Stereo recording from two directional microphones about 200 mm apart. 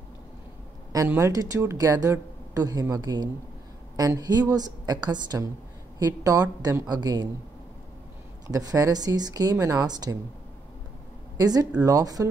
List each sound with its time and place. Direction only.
0.9 s a woman's voice: 15° right (ahead or behind)
8.5 s speech: 15° right (ahead or behind)
11.3 s speech: 20° right (ahead or behind)